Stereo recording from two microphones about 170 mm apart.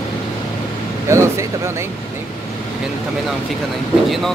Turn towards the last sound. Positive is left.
turn(degrees=0)  # may be behind; listen again after turning